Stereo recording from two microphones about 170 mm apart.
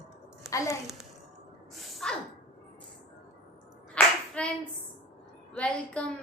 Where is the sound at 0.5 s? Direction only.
20° left (ahead or behind).